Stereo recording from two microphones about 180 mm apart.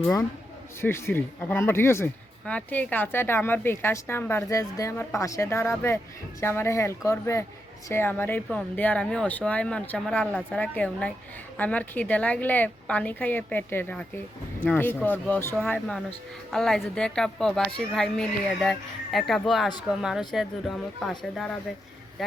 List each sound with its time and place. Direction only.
0.8 s a woman's voice: 15° left (ahead or behind)